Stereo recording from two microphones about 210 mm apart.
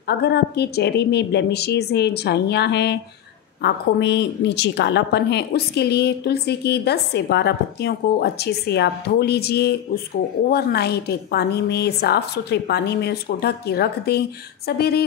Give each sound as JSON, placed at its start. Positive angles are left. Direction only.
{"t": 0.0, "sound": "a woman's voice", "side_deg": 50}